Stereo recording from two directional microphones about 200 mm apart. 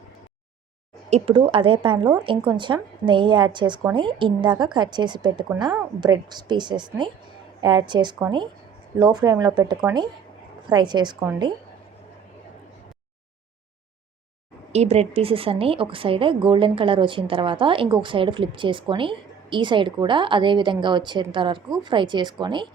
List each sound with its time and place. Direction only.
1.1 s a woman's voice: 30° right (ahead or behind)
14.7 s a woman's voice: 30° right (ahead or behind)